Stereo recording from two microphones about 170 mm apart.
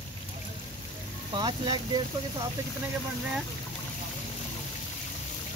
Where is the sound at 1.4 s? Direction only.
25° right (ahead or behind).